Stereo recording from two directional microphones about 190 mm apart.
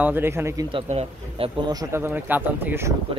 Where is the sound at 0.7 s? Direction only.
30° right (ahead or behind); by 2.9 s 10° right (ahead or behind).